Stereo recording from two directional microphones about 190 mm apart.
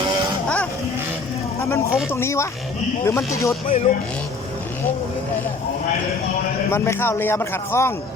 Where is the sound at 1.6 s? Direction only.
15° left (ahead or behind).